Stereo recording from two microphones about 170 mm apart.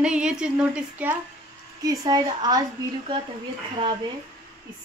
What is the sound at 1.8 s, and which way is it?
Speech, 20° right (ahead or behind).